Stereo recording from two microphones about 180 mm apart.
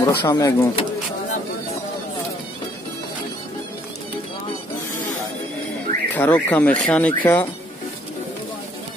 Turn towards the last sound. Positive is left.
turn(degrees=10)  # may be behind; listen again after turning